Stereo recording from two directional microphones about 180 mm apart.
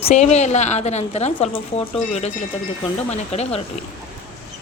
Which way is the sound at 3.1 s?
35° left (ahead or behind).